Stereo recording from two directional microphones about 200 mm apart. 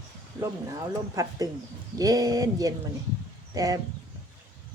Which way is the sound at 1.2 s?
15° right (ahead or behind).